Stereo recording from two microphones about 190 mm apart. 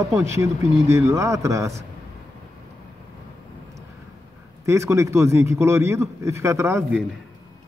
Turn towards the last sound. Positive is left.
turn(degrees=-15)  # may be behind; listen again after turning